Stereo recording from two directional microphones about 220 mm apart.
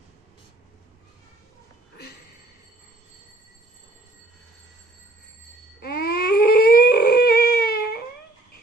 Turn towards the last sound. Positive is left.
turn(degrees=45)  # may be behind; listen again after turning